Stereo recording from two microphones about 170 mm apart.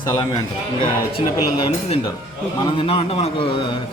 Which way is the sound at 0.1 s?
25° left (ahead or behind).